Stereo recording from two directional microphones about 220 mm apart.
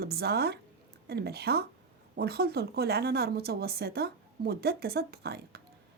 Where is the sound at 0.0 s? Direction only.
45° right (ahead or behind).